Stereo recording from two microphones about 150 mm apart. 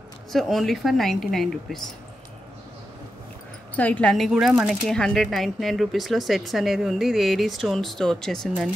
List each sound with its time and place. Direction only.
0.3 s speech: centre (ahead or behind)
3.7 s speech: 10° left (ahead or behind)